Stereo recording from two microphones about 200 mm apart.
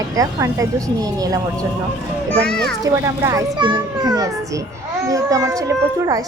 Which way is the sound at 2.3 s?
5° left (ahead or behind).